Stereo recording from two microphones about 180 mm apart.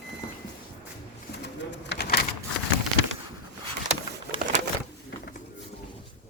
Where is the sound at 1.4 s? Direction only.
70° left (ahead or behind).